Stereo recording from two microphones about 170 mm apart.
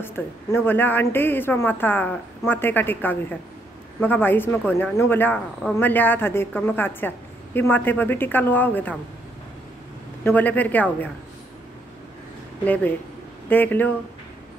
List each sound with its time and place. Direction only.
0.0 s a woman's voice: 15° left (ahead or behind)
10.2 s a woman's voice: 10° left (ahead or behind)
12.6 s a woman's voice: 10° left (ahead or behind)